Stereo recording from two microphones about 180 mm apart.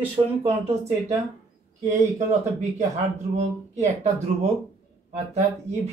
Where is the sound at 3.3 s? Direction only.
40° right (ahead or behind).